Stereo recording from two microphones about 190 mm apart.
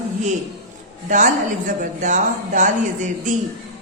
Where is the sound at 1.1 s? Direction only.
40° right (ahead or behind).